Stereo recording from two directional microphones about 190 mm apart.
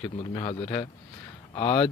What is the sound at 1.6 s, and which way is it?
Speech, 30° left (ahead or behind).